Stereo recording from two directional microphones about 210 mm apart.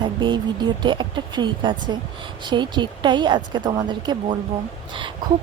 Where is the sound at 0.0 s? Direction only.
20° right (ahead or behind).